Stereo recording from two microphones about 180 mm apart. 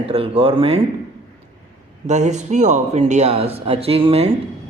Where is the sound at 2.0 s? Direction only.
40° right (ahead or behind).